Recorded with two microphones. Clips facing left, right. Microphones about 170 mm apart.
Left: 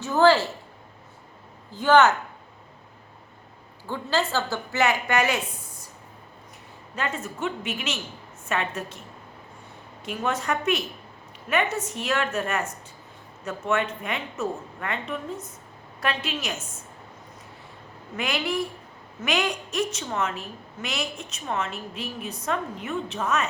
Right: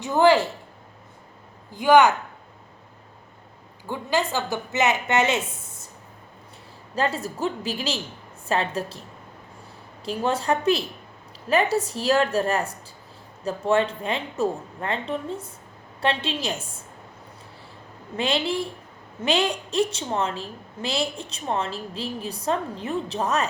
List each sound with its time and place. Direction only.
0.0 s speech: 15° right (ahead or behind)
1.7 s speech: 15° right (ahead or behind)
3.8 s a woman's voice: 15° right (ahead or behind)
6.9 s a woman's voice: 35° right (ahead or behind)
18.2 s a woman's voice: 30° right (ahead or behind)